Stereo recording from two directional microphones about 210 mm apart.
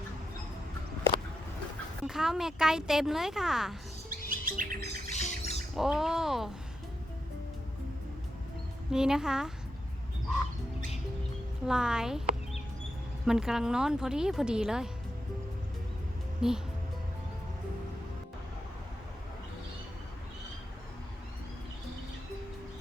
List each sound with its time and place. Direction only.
2.0 s speech: 5° right (ahead or behind)
4.3 s music: 40° right (ahead or behind)
4.9 s squawk: 30° left (ahead or behind)
5.7 s speech: centre (ahead or behind)
8.9 s speech: 5° right (ahead or behind)
11.6 s speech: 5° right (ahead or behind)
13.2 s speech: 5° right (ahead or behind)
16.4 s speech: 5° right (ahead or behind)